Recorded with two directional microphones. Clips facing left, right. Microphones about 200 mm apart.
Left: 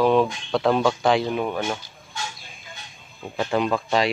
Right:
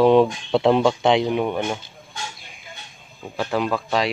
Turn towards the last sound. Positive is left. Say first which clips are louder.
# even
turn(degrees=0)  # may be behind; listen again after turning